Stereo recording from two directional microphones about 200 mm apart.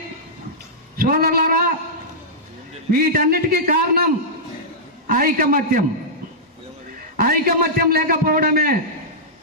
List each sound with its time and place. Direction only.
0.9 s a man's voice: 50° right (ahead or behind)
2.9 s a man's voice: 45° right (ahead or behind)
5.1 s a man's voice: 45° right (ahead or behind)
7.2 s a man's voice: 45° right (ahead or behind)